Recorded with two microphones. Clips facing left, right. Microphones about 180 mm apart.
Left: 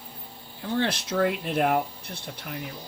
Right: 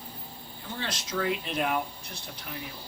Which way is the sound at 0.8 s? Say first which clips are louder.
Left 7 dB; 60° left (ahead or behind).